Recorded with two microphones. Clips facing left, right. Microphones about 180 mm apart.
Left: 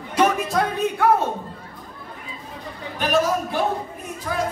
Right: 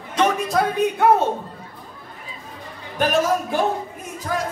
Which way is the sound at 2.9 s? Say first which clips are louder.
Right 1 dB; 45° right (ahead or behind).